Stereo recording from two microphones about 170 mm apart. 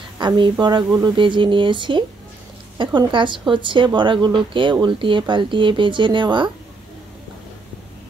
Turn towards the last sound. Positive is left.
turn(degrees=-30)  # may be behind; listen again after turning